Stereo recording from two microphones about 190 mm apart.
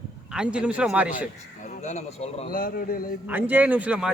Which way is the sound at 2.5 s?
50° left (ahead or behind).